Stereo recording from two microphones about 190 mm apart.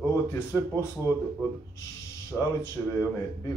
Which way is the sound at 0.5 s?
10° left (ahead or behind).